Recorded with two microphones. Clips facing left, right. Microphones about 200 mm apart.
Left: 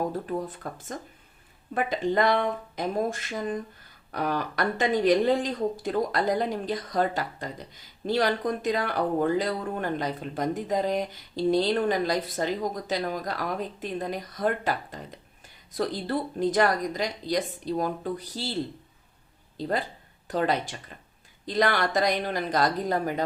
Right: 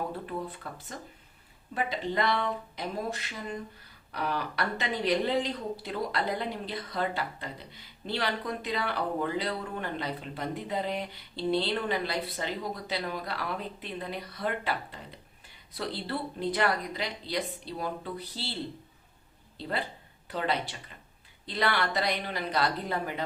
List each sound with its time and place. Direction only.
0.1 s speech: 40° left (ahead or behind)
19.5 s speech: 40° left (ahead or behind)